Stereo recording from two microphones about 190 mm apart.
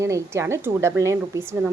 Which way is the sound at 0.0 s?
15° right (ahead or behind).